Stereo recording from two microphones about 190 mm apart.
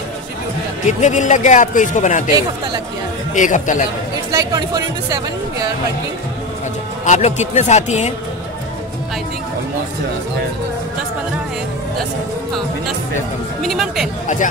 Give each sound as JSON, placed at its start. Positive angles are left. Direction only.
{"t": 0.8, "sound": "speech", "side_deg": 40}
{"t": 3.3, "sound": "speech", "side_deg": 40}
{"t": 4.3, "sound": "speech", "side_deg": -20}
{"t": 7.1, "sound": "speech", "side_deg": 35}
{"t": 13.6, "sound": "speech", "side_deg": 0}
{"t": 14.2, "sound": "speech", "side_deg": 40}